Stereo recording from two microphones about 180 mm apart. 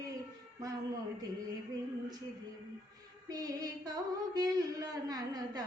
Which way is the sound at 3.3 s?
20° right (ahead or behind).